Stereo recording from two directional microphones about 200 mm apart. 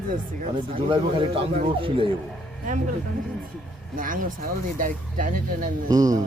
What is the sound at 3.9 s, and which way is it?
Speech, 40° right (ahead or behind).